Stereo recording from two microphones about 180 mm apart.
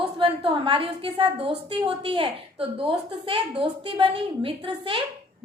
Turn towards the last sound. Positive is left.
turn(degrees=-30)  # may be behind; listen again after turning